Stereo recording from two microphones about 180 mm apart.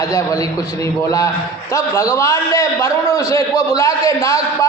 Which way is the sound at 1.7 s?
15° left (ahead or behind).